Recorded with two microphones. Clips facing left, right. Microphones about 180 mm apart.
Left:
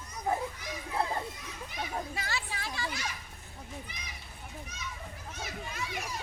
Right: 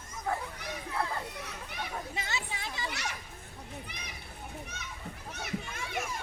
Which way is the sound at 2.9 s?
70° right (ahead or behind).